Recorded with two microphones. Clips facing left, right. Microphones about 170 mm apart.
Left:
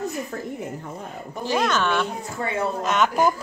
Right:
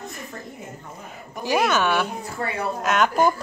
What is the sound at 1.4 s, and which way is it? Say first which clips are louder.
A woman's voice: right 2 dB; 10° right (ahead or behind).